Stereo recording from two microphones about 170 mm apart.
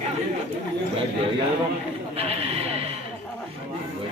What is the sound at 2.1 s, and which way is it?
Speech, 35° right (ahead or behind).